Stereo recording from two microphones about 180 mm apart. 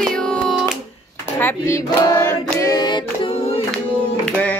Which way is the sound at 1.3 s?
15° left (ahead or behind).